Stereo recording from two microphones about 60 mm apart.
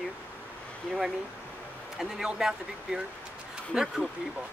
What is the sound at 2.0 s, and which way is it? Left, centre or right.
Speech, centre.